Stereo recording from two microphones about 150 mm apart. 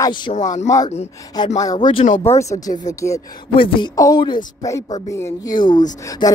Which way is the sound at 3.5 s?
35° left (ahead or behind).